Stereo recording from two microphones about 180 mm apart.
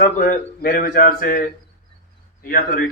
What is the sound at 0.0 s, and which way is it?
A man's voice, 50° left (ahead or behind).